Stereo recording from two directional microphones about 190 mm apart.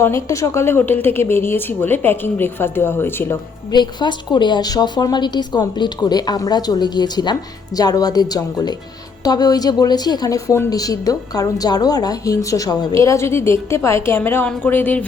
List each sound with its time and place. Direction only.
0.0 s a woman's voice: 15° left (ahead or behind)
3.7 s a woman's voice: 25° left (ahead or behind)